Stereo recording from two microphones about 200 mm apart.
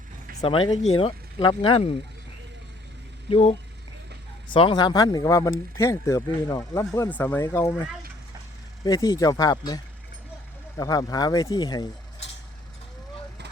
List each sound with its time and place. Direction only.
0.4 s speech: 25° left (ahead or behind)
3.2 s speech: 30° left (ahead or behind)